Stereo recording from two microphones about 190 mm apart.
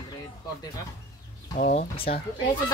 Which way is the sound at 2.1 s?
35° left (ahead or behind).